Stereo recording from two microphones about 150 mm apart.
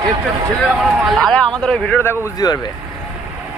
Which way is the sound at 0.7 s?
5° right (ahead or behind).